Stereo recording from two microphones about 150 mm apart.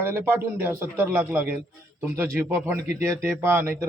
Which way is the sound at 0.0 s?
15° right (ahead or behind).